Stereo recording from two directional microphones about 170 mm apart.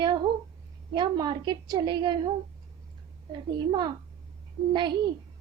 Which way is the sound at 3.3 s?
25° right (ahead or behind).